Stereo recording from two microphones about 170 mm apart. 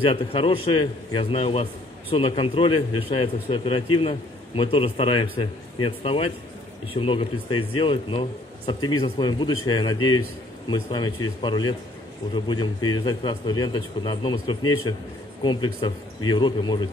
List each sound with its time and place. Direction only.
0.0 s a man's voice: 30° left (ahead or behind)